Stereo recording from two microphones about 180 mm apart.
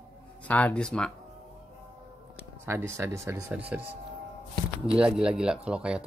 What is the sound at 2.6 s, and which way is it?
Speech, 15° right (ahead or behind).